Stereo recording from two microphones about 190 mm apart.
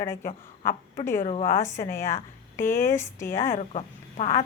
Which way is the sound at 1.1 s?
40° left (ahead or behind).